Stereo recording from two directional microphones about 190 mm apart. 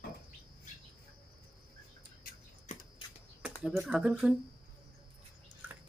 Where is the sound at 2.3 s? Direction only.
50° left (ahead or behind).